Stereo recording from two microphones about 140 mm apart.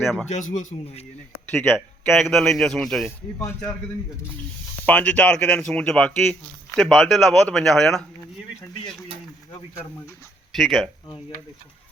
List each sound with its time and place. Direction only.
0.0 s speech: centre (ahead or behind)
0.3 s a man's voice: 60° left (ahead or behind)
1.5 s speech: 5° left (ahead or behind)
4.9 s speech: 10° left (ahead or behind)
10.5 s speech: centre (ahead or behind)